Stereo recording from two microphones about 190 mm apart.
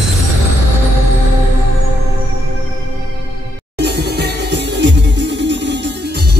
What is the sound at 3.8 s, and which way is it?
Music, 60° right (ahead or behind).